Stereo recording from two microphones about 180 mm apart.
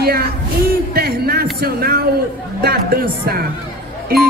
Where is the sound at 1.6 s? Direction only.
60° right (ahead or behind).